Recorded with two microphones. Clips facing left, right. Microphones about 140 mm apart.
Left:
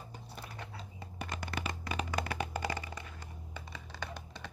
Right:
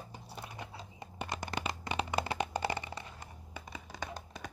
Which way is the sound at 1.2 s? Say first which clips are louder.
Right 2 dB; 20° right (ahead or behind).